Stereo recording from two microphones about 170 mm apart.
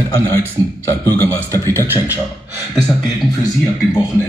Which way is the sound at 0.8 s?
15° left (ahead or behind).